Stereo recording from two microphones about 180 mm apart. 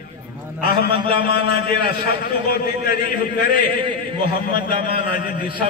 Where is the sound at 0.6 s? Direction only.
60° left (ahead or behind).